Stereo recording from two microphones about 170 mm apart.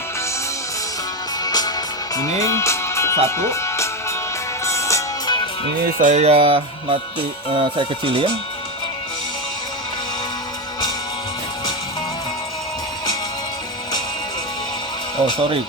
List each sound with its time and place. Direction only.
1.5 s music: 25° left (ahead or behind)
2.1 s speech: 20° left (ahead or behind)
4.6 s music: 15° left (ahead or behind)
5.8 s speech: 50° right (ahead or behind); by 8.3 s 30° right (ahead or behind)
15.2 s speech: 30° right (ahead or behind)